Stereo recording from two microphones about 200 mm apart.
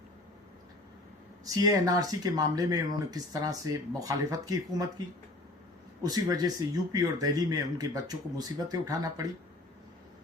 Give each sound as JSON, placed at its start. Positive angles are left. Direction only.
{"t": 1.5, "sound": "speech", "side_deg": -15}
{"t": 6.0, "sound": "speech", "side_deg": -20}